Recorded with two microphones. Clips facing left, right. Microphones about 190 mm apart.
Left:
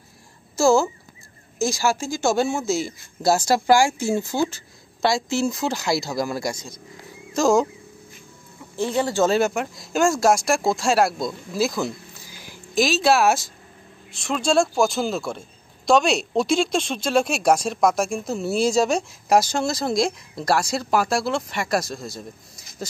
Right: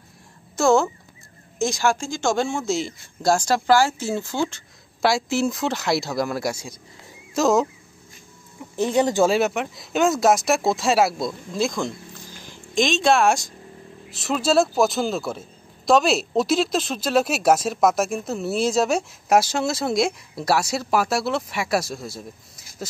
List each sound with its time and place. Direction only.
0.6 s chicken: centre (ahead or behind)
1.6 s speech: 5° left (ahead or behind)
8.7 s speech: 20° right (ahead or behind)
9.3 s speech: 5° right (ahead or behind)